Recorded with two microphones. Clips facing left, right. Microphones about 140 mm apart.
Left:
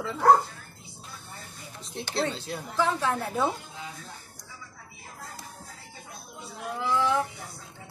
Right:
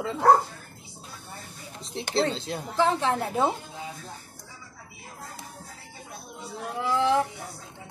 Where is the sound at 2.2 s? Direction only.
25° right (ahead or behind).